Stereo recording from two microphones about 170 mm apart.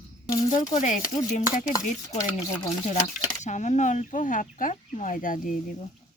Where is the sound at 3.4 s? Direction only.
45° left (ahead or behind).